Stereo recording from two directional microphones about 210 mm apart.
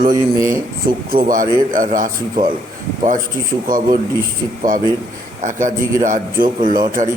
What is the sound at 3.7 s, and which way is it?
Speech, 40° right (ahead or behind).